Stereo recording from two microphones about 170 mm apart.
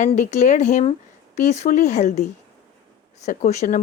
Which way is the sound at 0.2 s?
45° left (ahead or behind).